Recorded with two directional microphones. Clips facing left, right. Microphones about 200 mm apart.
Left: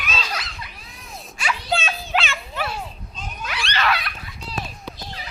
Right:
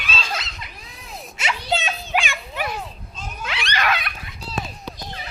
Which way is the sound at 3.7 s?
15° right (ahead or behind).